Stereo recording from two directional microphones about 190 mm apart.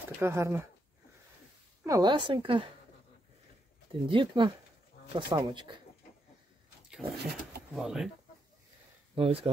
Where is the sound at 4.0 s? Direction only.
25° right (ahead or behind).